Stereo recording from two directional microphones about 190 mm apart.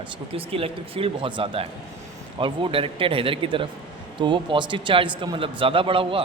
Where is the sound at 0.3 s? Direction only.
30° right (ahead or behind).